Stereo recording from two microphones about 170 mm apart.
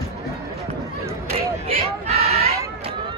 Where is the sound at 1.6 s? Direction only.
35° right (ahead or behind).